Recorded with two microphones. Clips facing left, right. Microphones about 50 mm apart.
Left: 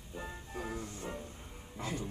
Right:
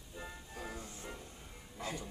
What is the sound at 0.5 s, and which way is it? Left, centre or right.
Music, left.